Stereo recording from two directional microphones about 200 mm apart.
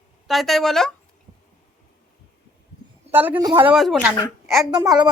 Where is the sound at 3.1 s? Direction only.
10° right (ahead or behind).